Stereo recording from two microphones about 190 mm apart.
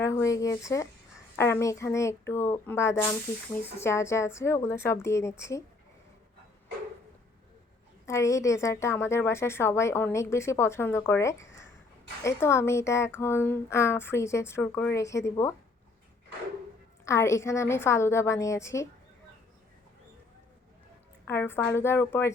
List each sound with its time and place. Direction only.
0.0 s a woman's voice: 15° left (ahead or behind)
8.0 s a woman's voice: 15° left (ahead or behind)
17.1 s a woman's voice: 15° left (ahead or behind)
21.2 s a woman's voice: 10° left (ahead or behind)